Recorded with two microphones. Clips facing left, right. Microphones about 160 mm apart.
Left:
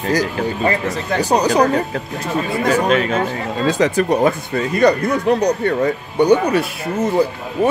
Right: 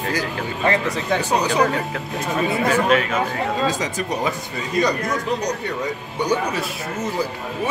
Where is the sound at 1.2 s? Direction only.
40° left (ahead or behind).